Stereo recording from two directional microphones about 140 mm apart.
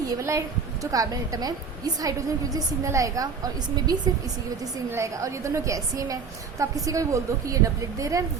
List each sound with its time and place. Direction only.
0.1 s a woman's voice: 20° right (ahead or behind)